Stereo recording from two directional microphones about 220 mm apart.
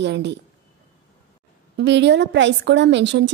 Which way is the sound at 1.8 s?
50° right (ahead or behind).